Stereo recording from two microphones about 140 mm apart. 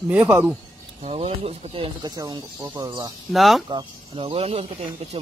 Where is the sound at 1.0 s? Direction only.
45° right (ahead or behind).